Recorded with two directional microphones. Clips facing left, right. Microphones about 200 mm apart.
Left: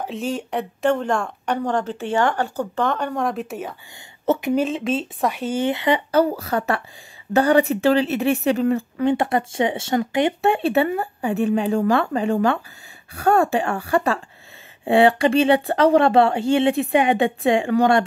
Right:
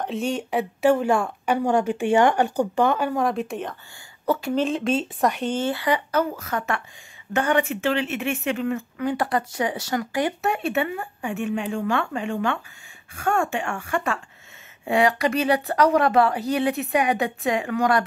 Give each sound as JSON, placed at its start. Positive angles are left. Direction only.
{"t": 0.0, "sound": "speech", "side_deg": 0}
{"t": 4.3, "sound": "speech", "side_deg": 15}
{"t": 4.6, "sound": "speech", "side_deg": 0}
{"t": 5.6, "sound": "a woman's voice", "side_deg": 20}